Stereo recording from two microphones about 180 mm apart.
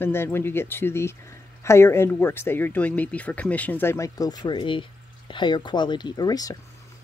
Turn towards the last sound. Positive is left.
turn(degrees=20)  # may be behind; listen again after turning